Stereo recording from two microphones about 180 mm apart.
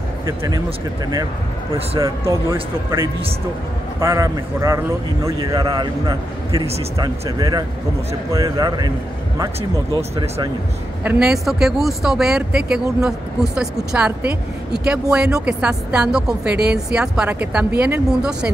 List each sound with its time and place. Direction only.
2.0 s a man's voice: 15° right (ahead or behind)
4.0 s a man's voice: 15° right (ahead or behind)
11.1 s speech: 5° right (ahead or behind)